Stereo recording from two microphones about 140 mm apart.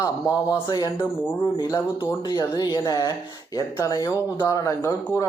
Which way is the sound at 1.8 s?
20° left (ahead or behind).